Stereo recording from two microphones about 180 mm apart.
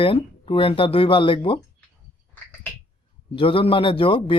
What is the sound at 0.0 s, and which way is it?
Speech, 30° left (ahead or behind).